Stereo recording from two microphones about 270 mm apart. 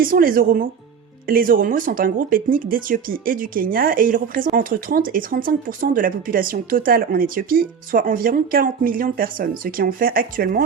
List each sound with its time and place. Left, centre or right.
0.0 s speech: right